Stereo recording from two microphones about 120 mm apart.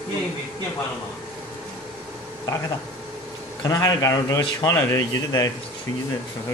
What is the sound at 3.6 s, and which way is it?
A man's voice, 30° left (ahead or behind).